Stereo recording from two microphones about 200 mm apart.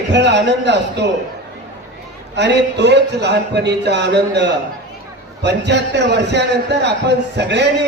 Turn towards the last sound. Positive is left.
turn(degrees=-60)  # may be behind; listen again after turning